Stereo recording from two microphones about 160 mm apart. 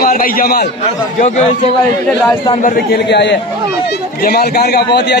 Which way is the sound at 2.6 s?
75° left (ahead or behind).